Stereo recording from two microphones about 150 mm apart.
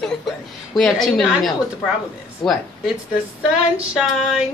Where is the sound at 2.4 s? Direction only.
30° left (ahead or behind).